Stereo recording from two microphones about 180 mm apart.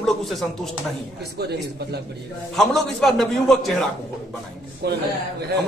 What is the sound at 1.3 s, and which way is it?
Speech, 65° right (ahead or behind).